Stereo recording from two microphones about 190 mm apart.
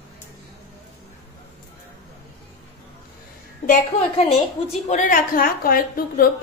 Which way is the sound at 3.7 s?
35° left (ahead or behind).